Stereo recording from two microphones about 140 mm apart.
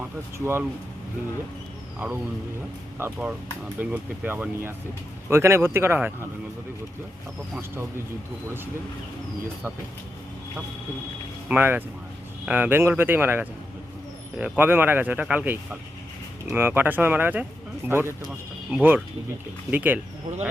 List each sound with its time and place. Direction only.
0.3 s speech: 15° right (ahead or behind)
2.0 s speech: 10° right (ahead or behind)
11.4 s speech: 15° right (ahead or behind)
16.6 s speech: 15° right (ahead or behind)